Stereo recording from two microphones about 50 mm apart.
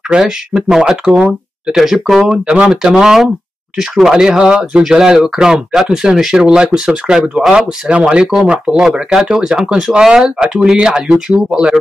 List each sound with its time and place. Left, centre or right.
0.7 s speech: centre
2.2 s speech: right